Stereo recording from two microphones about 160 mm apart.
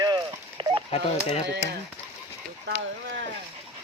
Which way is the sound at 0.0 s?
20° right (ahead or behind).